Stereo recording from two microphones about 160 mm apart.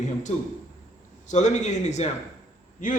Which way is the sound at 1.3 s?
45° left (ahead or behind).